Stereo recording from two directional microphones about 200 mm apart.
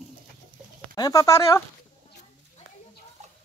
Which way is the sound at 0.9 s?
20° left (ahead or behind).